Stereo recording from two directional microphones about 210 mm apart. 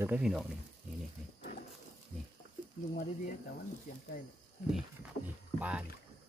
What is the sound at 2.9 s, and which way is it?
Speech, 45° left (ahead or behind).